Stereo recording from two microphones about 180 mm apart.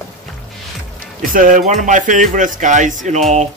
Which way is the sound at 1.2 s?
50° right (ahead or behind).